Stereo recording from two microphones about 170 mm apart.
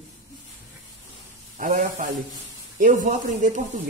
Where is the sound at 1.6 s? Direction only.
50° right (ahead or behind).